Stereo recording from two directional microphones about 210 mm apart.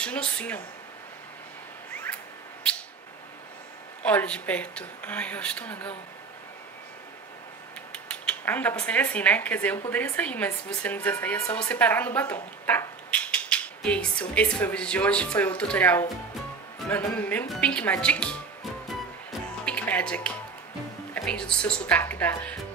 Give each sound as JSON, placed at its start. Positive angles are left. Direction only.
{"t": 0.0, "sound": "speech", "side_deg": 5}
{"t": 4.0, "sound": "speech", "side_deg": 5}
{"t": 7.9, "sound": "speech", "side_deg": 5}
{"t": 19.6, "sound": "music", "side_deg": 5}
{"t": 21.1, "sound": "speech", "side_deg": 5}